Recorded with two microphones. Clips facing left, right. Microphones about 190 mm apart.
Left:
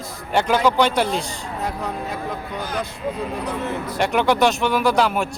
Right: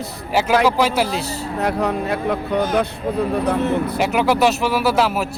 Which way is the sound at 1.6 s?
70° right (ahead or behind).